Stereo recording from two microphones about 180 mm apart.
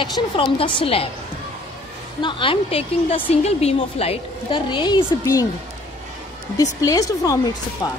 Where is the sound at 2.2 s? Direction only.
25° left (ahead or behind).